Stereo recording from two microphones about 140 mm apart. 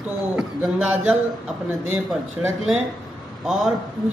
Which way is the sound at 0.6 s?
10° right (ahead or behind).